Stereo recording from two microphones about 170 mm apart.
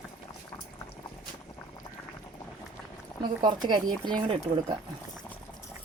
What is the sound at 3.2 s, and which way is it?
Speech, 25° right (ahead or behind).